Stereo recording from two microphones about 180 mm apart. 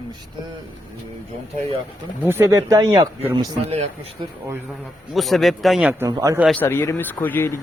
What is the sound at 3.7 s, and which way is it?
Speech, 35° right (ahead or behind).